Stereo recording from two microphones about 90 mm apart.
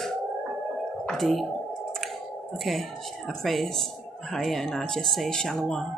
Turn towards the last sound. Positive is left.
turn(degrees=10)  # may be behind; listen again after turning